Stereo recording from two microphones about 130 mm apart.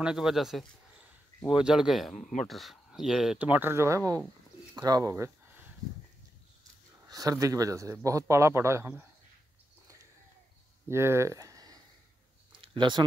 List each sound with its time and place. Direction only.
0.0 s speech: 5° right (ahead or behind)
7.1 s speech: 25° right (ahead or behind)
10.9 s speech: 20° right (ahead or behind)
12.5 s a sound: 40° right (ahead or behind)